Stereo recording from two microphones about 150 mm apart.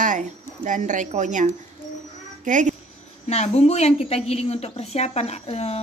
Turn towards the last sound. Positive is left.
turn(degrees=45)  # may be behind; listen again after turning